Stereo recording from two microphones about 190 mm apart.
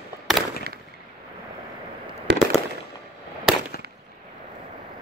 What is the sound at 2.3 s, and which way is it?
Fireworks, 60° right (ahead or behind).